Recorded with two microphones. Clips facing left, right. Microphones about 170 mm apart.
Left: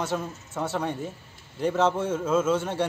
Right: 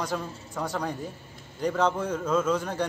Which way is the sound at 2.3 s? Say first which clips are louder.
Left 1 dB; 5° left (ahead or behind).